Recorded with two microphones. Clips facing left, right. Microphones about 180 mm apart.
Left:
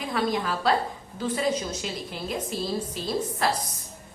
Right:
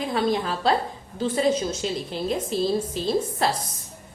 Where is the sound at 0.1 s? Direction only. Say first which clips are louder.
Right 1 dB; 25° right (ahead or behind).